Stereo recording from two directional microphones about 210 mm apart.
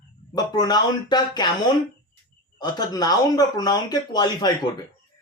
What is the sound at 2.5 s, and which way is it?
A man's voice, 20° left (ahead or behind).